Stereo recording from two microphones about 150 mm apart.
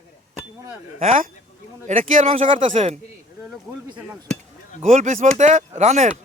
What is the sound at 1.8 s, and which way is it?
Speech, 60° right (ahead or behind).